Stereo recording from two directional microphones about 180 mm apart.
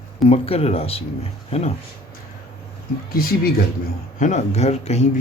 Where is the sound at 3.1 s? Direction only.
55° left (ahead or behind).